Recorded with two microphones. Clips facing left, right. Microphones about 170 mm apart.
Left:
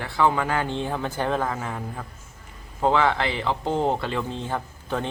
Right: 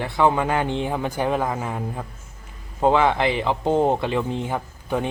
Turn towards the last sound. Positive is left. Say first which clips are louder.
# right 4 dB
turn(degrees=-15)  # may be behind; listen again after turning